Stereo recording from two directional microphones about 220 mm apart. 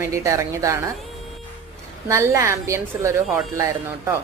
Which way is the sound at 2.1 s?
15° right (ahead or behind).